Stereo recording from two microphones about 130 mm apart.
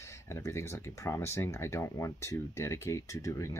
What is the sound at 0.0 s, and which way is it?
Speech, 20° left (ahead or behind).